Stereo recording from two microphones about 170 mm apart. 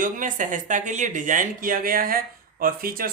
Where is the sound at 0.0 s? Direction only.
50° right (ahead or behind).